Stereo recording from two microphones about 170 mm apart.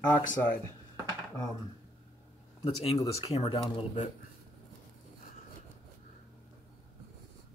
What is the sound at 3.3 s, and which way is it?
Speech, 35° left (ahead or behind).